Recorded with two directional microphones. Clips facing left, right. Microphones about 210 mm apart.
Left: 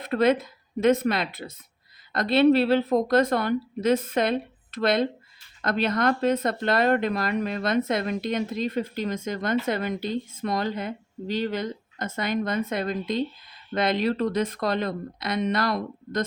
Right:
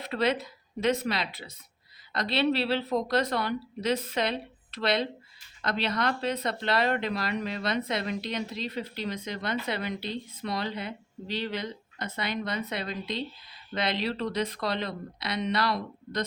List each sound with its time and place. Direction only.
0.0 s speech: 50° left (ahead or behind)